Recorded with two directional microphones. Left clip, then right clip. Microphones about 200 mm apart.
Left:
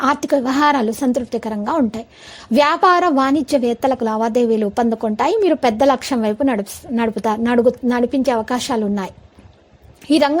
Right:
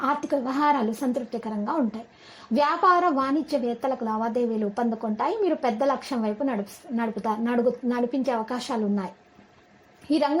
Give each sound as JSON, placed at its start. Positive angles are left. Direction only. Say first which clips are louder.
{"t": 0.0, "sound": "a woman's voice", "louder": "left 9 dB", "side_deg": 30}
{"t": 10.1, "sound": "a woman's voice", "louder": "left 9 dB", "side_deg": 35}